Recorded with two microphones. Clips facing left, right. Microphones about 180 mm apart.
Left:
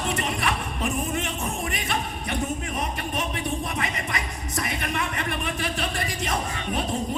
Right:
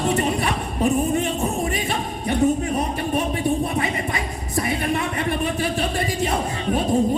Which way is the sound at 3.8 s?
30° right (ahead or behind).